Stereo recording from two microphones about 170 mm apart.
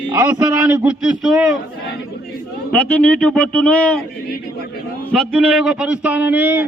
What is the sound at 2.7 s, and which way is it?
Speech, 5° left (ahead or behind).